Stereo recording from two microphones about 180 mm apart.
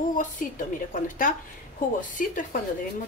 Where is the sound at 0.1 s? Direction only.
45° left (ahead or behind).